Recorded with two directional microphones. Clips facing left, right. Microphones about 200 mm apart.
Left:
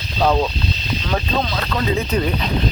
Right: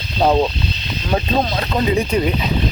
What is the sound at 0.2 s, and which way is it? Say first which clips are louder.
Speech: right 2 dB; 20° right (ahead or behind).